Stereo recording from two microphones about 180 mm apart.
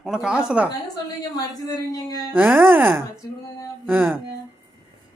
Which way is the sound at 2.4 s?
10° right (ahead or behind).